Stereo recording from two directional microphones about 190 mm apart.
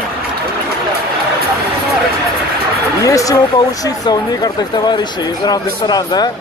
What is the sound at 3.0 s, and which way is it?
Speech, 15° left (ahead or behind).